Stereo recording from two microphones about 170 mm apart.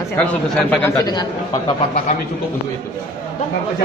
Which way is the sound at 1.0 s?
25° left (ahead or behind).